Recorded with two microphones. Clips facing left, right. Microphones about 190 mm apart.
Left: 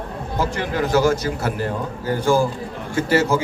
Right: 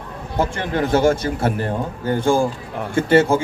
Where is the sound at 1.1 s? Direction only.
25° right (ahead or behind).